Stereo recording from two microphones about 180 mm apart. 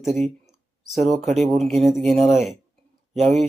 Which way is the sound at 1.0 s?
40° right (ahead or behind).